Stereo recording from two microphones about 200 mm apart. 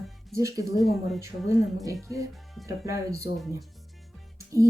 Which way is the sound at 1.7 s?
15° right (ahead or behind).